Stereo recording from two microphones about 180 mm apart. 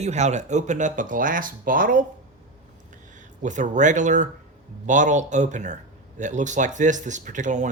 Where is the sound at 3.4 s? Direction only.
45° right (ahead or behind).